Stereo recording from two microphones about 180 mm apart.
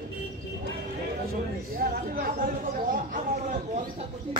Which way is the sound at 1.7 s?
55° right (ahead or behind).